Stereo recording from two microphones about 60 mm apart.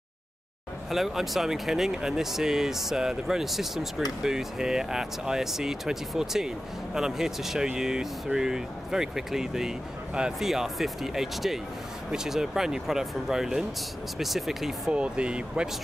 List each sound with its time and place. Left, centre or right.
0.8 s speech: centre
14.9 s speech: centre